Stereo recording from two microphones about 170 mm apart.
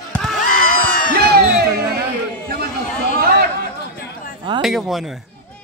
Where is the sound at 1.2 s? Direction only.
70° right (ahead or behind).